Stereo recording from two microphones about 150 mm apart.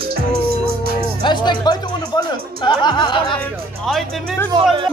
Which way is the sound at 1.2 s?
30° left (ahead or behind).